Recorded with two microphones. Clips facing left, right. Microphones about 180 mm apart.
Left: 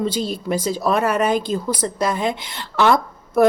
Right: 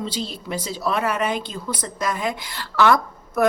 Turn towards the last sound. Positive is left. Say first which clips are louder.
# left 5 dB
turn(degrees=25)  # may be behind; listen again after turning